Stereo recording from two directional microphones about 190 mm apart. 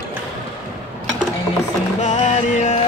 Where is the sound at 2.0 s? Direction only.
40° left (ahead or behind).